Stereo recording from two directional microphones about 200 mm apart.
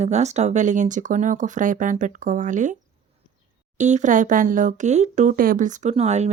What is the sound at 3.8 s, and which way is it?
Speech, 35° right (ahead or behind).